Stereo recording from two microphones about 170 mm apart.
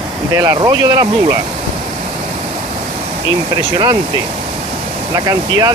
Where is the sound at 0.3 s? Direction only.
20° right (ahead or behind).